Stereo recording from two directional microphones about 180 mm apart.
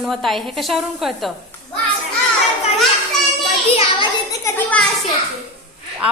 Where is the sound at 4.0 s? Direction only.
20° left (ahead or behind).